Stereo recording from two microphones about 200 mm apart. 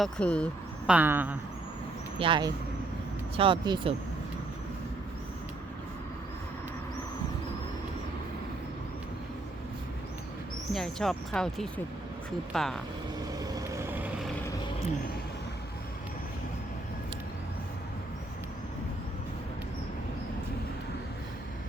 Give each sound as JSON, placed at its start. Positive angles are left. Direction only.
{"t": 0.0, "sound": "speech", "side_deg": 5}
{"t": 0.9, "sound": "speech", "side_deg": -10}
{"t": 2.1, "sound": "speech", "side_deg": -25}
{"t": 10.7, "sound": "speech", "side_deg": 0}
{"t": 13.6, "sound": "vehicle", "side_deg": -10}